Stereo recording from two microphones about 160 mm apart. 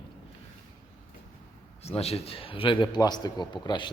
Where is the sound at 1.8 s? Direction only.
40° left (ahead or behind).